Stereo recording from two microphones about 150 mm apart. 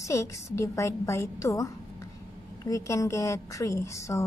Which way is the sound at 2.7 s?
20° left (ahead or behind).